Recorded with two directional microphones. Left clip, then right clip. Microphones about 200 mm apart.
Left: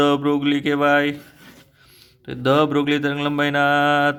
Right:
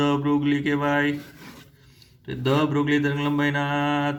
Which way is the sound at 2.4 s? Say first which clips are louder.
Left 5 dB; 55° left (ahead or behind).